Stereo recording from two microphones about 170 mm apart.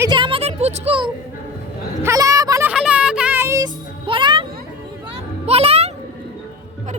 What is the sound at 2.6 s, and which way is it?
Music, 5° right (ahead or behind).